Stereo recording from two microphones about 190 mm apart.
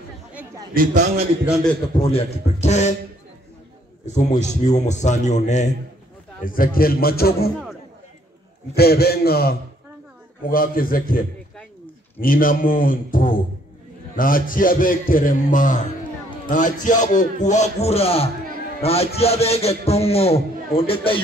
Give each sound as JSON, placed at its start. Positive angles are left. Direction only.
{"t": 0.7, "sound": "a man's voice", "side_deg": -40}
{"t": 1.4, "sound": "a man's voice", "side_deg": 0}
{"t": 2.0, "sound": "a man's voice", "side_deg": 30}
{"t": 4.4, "sound": "a man's voice", "side_deg": 35}
{"t": 6.4, "sound": "a man's voice", "side_deg": 50}
{"t": 8.7, "sound": "a man's voice", "side_deg": 55}